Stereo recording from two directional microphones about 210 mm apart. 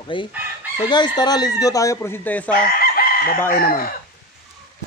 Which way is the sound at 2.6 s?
45° left (ahead or behind).